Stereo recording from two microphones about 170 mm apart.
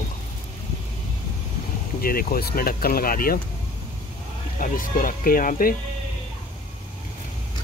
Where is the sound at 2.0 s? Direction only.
60° left (ahead or behind).